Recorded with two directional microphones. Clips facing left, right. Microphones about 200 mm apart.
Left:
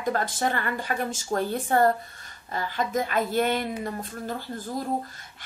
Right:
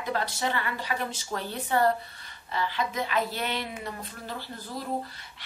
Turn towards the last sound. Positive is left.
turn(degrees=45)  # may be behind; listen again after turning